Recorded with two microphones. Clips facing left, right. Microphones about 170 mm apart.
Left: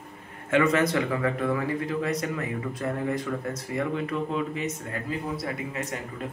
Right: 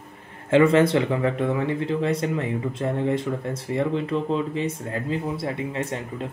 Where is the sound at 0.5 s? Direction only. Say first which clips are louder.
Right 6 dB; 30° right (ahead or behind).